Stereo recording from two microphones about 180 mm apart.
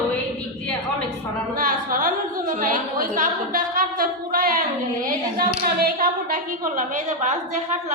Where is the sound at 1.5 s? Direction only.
50° right (ahead or behind).